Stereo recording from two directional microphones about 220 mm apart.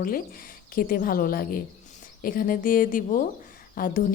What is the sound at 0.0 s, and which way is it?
Speech, 40° left (ahead or behind).